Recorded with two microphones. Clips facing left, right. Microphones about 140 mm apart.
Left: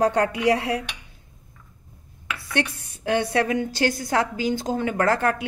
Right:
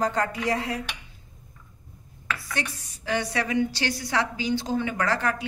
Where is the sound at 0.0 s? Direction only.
65° left (ahead or behind).